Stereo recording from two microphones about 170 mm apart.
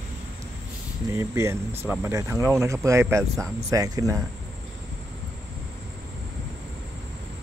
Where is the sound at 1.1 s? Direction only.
15° right (ahead or behind).